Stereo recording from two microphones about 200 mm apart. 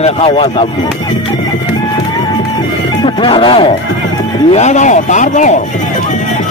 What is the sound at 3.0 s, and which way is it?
Speech, 25° left (ahead or behind).